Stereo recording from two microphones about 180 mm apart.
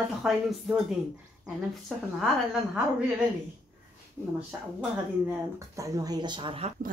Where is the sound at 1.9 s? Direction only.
Centre (ahead or behind).